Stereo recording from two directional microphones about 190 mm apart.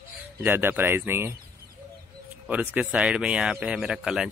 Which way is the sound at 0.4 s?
10° right (ahead or behind).